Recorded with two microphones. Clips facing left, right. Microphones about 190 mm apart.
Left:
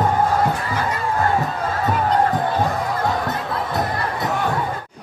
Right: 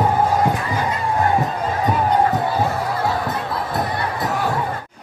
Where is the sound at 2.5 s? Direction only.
5° right (ahead or behind).